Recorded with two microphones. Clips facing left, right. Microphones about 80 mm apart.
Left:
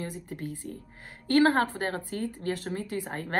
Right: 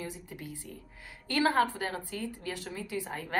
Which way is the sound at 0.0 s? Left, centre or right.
Left.